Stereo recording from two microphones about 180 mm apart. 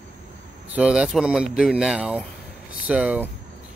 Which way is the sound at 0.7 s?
5° right (ahead or behind).